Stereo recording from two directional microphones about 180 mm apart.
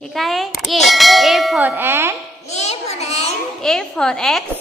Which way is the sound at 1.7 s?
15° right (ahead or behind).